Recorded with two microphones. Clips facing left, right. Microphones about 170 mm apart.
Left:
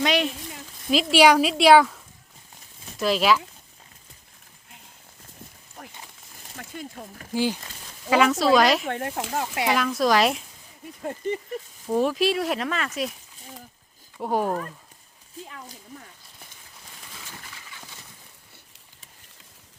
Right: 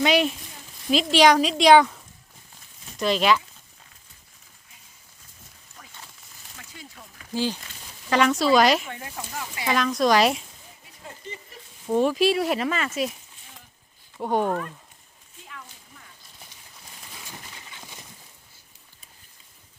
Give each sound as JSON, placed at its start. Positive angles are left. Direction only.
{"t": 0.0, "sound": "speech", "side_deg": 0}
{"t": 3.0, "sound": "speech", "side_deg": 5}
{"t": 5.8, "sound": "a sound", "side_deg": 55}
{"t": 6.6, "sound": "speech", "side_deg": 50}
{"t": 7.3, "sound": "speech", "side_deg": 15}
{"t": 8.1, "sound": "speech", "side_deg": 0}
{"t": 8.9, "sound": "speech", "side_deg": 60}
{"t": 9.6, "sound": "speech", "side_deg": 5}
{"t": 11.2, "sound": "speech", "side_deg": 55}
{"t": 11.9, "sound": "speech", "side_deg": 0}
{"t": 14.2, "sound": "speech", "side_deg": 5}
{"t": 15.4, "sound": "a sound", "side_deg": 35}
{"t": 17.2, "sound": "a sound", "side_deg": -20}